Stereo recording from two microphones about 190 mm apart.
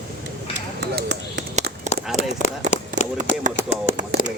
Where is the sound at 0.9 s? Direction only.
65° right (ahead or behind).